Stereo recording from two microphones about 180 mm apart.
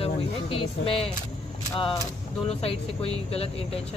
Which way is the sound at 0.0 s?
30° left (ahead or behind).